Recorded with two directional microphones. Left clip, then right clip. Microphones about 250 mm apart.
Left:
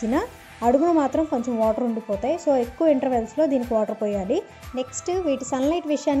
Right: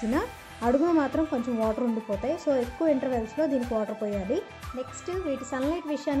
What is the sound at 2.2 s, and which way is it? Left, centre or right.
Speech, centre.